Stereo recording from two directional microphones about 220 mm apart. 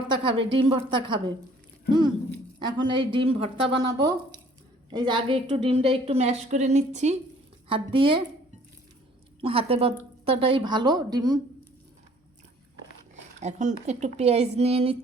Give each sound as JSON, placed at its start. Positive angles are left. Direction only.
{"t": 0.1, "sound": "a woman's voice", "side_deg": -25}
{"t": 9.4, "sound": "a woman's voice", "side_deg": -25}
{"t": 13.4, "sound": "a woman's voice", "side_deg": -30}